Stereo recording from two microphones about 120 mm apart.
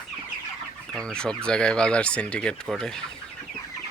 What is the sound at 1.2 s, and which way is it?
Speech, 5° left (ahead or behind).